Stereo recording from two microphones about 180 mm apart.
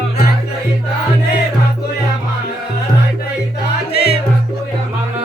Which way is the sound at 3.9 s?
65° left (ahead or behind).